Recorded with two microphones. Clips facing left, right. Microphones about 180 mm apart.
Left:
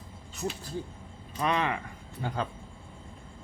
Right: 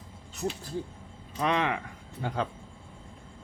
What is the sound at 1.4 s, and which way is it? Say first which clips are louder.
Speech: right 1 dB; 90° right.